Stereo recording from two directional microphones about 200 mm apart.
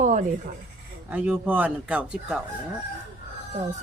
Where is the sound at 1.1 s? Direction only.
10° right (ahead or behind).